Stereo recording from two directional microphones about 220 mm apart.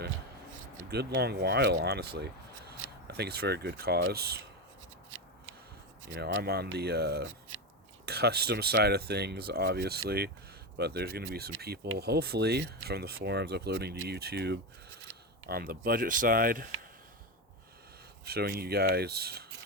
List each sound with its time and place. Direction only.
0.8 s speech: 50° right (ahead or behind)
6.0 s speech: 55° right (ahead or behind)
7.3 s speech: 65° right (ahead or behind)
8.0 s speech: 45° right (ahead or behind)
15.1 s a sound: 65° right (ahead or behind)
15.4 s speech: 45° right (ahead or behind)
18.3 s speech: 45° right (ahead or behind)